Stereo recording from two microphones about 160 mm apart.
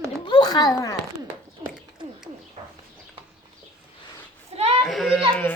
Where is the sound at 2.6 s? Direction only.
45° right (ahead or behind).